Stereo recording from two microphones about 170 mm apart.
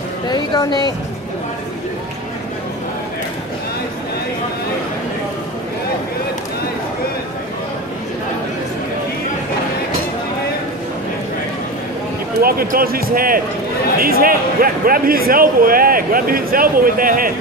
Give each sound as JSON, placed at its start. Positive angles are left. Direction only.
{"t": 0.3, "sound": "a woman's voice", "side_deg": 25}
{"t": 12.4, "sound": "speech", "side_deg": -60}